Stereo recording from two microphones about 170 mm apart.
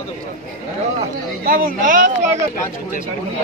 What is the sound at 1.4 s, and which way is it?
Speech, 60° right (ahead or behind).